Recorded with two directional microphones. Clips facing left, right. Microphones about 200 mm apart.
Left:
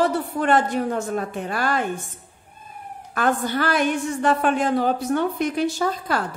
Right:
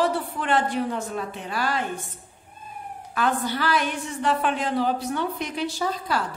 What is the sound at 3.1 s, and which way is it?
A woman's voice, 50° left (ahead or behind).